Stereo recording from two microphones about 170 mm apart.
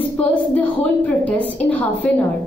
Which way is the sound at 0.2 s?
10° left (ahead or behind).